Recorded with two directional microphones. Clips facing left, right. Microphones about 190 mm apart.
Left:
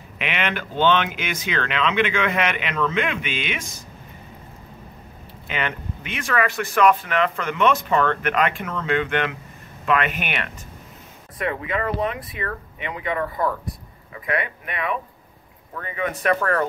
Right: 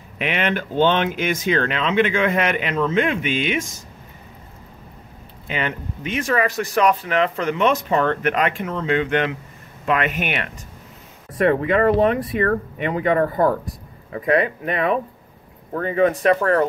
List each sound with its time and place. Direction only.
0.2 s speech: 40° right (ahead or behind)
5.5 s speech: 35° right (ahead or behind)